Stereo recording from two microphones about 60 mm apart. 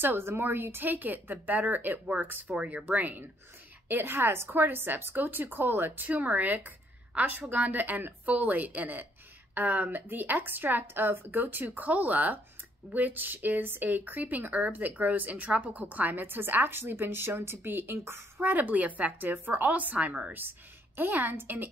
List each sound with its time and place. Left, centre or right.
0.0 s a woman's voice: right
18.4 s speech: right